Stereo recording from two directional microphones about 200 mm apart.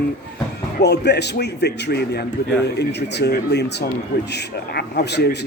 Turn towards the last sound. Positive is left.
turn(degrees=55)  # may be behind; listen again after turning